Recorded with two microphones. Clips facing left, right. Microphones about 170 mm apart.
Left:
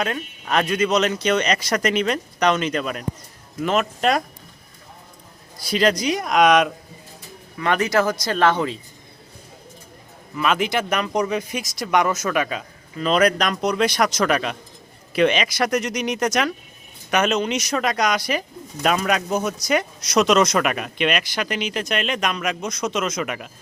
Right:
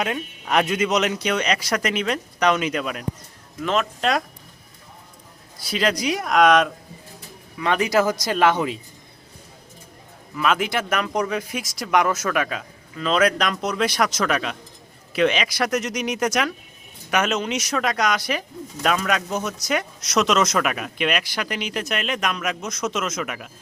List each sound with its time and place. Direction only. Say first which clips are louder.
0.0 s speech: even; 15° right (ahead or behind); by 4.2 s 5° left (ahead or behind)
5.7 s speech: left 3 dB; 5° right (ahead or behind)
6.4 s speech: even; 10° left (ahead or behind)
7.6 s speech: left 1 dB; 5° right (ahead or behind)
7.9 s speech: even; 15° right (ahead or behind)
10.3 s speech: left 1 dB; centre (ahead or behind)